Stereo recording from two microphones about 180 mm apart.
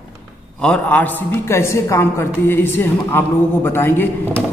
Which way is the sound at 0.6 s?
5° left (ahead or behind).